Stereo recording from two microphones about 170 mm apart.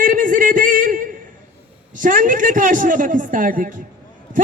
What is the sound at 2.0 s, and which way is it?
A man's voice, 50° right (ahead or behind).